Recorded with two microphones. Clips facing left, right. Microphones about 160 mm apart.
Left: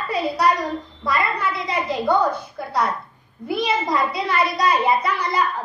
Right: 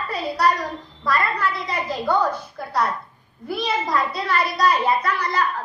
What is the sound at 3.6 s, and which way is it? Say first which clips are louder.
A child's voice: left 1 dB; 15° left (ahead or behind).